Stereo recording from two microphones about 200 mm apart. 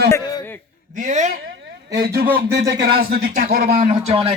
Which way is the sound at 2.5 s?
55° right (ahead or behind).